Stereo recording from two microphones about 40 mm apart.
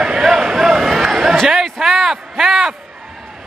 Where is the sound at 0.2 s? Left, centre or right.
Centre.